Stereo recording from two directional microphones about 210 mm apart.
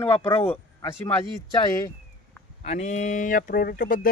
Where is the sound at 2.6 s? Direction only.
35° left (ahead or behind).